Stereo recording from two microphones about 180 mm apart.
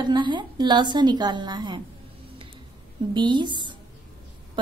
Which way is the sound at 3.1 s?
25° right (ahead or behind).